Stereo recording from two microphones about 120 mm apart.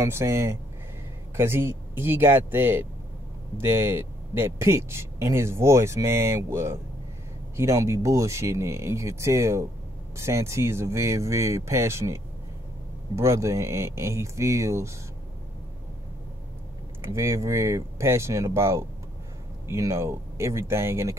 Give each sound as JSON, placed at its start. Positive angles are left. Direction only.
{"t": 0.0, "sound": "a man's voice", "side_deg": -20}
{"t": 17.0, "sound": "a man's voice", "side_deg": -20}